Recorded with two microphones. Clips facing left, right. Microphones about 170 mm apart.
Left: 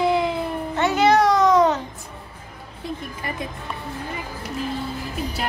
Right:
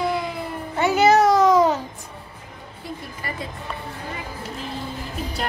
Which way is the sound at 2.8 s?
20° left (ahead or behind).